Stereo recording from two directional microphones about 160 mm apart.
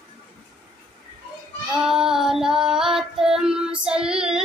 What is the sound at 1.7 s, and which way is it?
Child singing, 5° right (ahead or behind).